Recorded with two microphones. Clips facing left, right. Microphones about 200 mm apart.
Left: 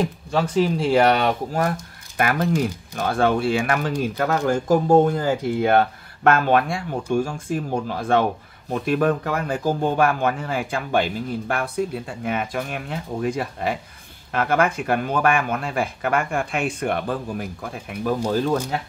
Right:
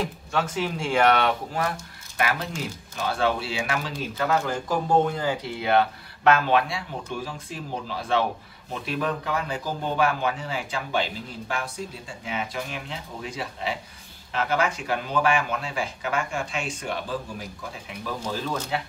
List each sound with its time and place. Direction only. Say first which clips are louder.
0.3 s speech: left 7 dB; 35° left (ahead or behind)
2.1 s speech: left 7 dB; 55° left (ahead or behind)